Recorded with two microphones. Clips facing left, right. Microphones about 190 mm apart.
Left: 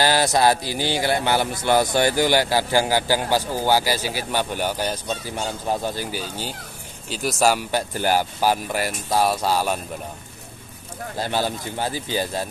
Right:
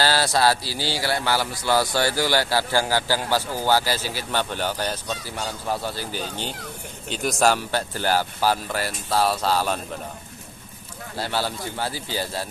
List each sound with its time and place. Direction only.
0.0 s speech: 20° left (ahead or behind)
11.1 s speech: 15° left (ahead or behind)